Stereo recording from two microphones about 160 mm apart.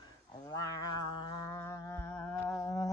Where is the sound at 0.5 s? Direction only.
25° left (ahead or behind).